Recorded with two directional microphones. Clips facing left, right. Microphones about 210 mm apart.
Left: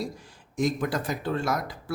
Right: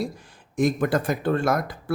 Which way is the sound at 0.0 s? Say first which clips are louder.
Right 4 dB; 55° right (ahead or behind).